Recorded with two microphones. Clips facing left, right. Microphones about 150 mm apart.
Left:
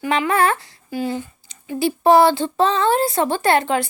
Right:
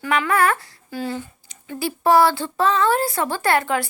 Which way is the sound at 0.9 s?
15° left (ahead or behind).